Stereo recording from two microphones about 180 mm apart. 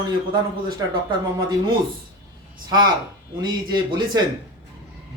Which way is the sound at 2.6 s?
25° right (ahead or behind).